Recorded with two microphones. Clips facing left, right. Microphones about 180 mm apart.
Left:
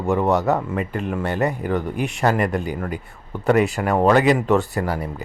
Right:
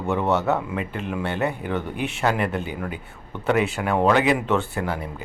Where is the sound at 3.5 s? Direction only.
Centre (ahead or behind).